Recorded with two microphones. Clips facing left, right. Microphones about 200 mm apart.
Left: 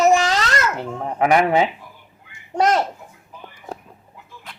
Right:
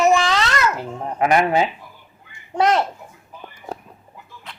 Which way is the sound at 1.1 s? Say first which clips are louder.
Left 1 dB; 25° left (ahead or behind).